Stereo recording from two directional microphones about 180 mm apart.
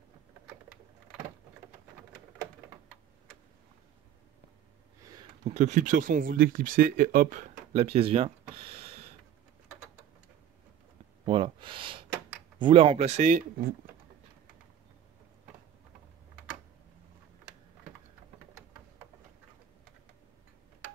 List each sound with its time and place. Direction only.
5.0 s a sound: 25° right (ahead or behind)
5.4 s speech: 40° right (ahead or behind)
11.2 s gasp: 30° right (ahead or behind)
12.5 s speech: 25° right (ahead or behind); by 13.7 s 50° right (ahead or behind)